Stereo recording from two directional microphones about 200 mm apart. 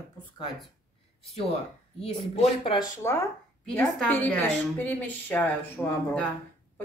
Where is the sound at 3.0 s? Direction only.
15° left (ahead or behind).